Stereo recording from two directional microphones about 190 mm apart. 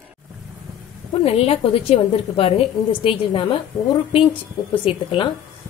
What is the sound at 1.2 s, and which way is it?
A woman's voice, 30° left (ahead or behind).